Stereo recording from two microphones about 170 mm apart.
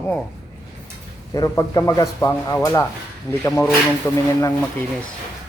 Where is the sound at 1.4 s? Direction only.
20° left (ahead or behind).